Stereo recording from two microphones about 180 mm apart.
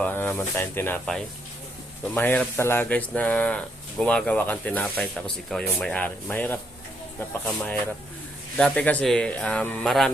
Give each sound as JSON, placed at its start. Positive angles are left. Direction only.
{"t": 0.0, "sound": "speech", "side_deg": 10}